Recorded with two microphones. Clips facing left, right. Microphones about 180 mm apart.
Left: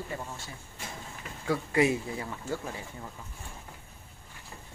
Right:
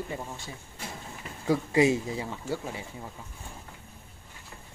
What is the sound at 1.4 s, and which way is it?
Speech, 20° right (ahead or behind).